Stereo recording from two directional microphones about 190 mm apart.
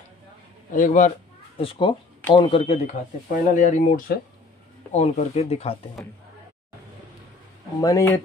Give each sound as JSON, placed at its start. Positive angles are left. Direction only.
{"t": 0.7, "sound": "a man's voice", "side_deg": 45}
{"t": 1.6, "sound": "speech", "side_deg": 30}
{"t": 3.3, "sound": "speech", "side_deg": 40}
{"t": 7.8, "sound": "speech", "side_deg": 15}